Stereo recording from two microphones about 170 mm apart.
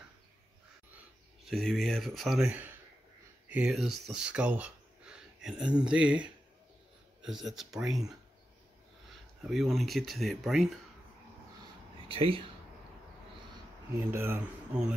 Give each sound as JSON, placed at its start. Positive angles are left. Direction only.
{"t": 1.4, "sound": "speech", "side_deg": 0}
{"t": 9.5, "sound": "speech", "side_deg": 0}
{"t": 12.1, "sound": "speech", "side_deg": -30}
{"t": 13.9, "sound": "speech", "side_deg": -15}